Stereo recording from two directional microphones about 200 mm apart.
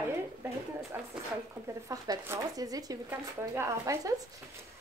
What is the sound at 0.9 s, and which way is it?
Speech, 10° right (ahead or behind).